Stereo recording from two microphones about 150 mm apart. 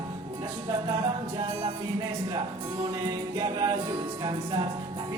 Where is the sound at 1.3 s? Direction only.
30° right (ahead or behind).